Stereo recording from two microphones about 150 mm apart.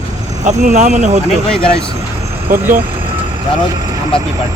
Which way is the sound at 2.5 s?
70° right (ahead or behind).